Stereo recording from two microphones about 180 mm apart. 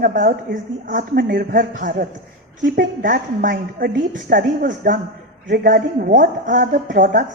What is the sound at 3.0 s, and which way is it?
A man's voice, 50° right (ahead or behind).